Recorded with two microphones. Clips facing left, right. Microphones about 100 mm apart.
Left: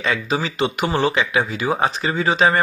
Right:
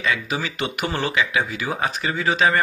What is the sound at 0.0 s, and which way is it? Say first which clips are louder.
Speech: left 3 dB; 35° left (ahead or behind).